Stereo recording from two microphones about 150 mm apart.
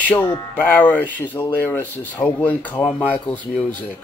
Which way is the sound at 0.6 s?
10° left (ahead or behind).